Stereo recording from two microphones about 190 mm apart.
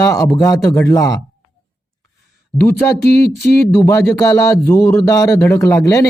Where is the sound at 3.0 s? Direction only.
55° left (ahead or behind).